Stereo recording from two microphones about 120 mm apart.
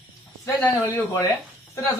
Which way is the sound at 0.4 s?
25° left (ahead or behind).